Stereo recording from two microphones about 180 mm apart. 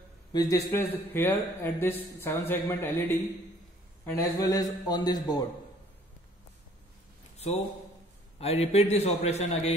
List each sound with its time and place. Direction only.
0.3 s a man's voice: 20° left (ahead or behind)
7.3 s a sound: 35° left (ahead or behind)
8.4 s a man's voice: 35° left (ahead or behind)